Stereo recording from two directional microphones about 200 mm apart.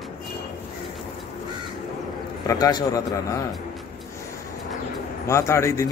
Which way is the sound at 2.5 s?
20° left (ahead or behind).